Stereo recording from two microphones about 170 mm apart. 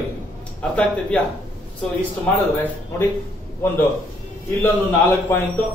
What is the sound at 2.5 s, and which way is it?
Speech, 15° left (ahead or behind).